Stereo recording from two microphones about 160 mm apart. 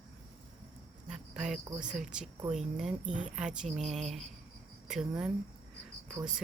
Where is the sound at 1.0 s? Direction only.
5° right (ahead or behind).